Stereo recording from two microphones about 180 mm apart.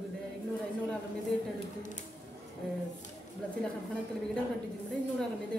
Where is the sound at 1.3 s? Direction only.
5° left (ahead or behind).